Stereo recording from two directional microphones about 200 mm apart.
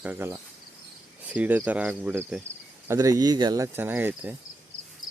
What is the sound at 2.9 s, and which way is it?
Speech, 15° right (ahead or behind).